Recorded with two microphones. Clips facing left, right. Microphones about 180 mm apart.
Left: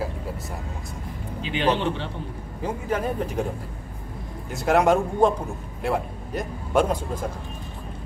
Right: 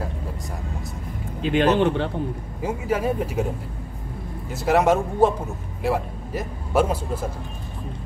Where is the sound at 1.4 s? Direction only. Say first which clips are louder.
Right 5 dB; 50° right (ahead or behind).